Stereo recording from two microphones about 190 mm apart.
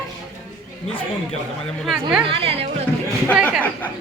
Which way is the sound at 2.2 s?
30° right (ahead or behind).